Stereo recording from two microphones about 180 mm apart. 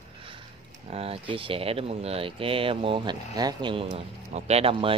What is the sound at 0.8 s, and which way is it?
Speech, 35° right (ahead or behind).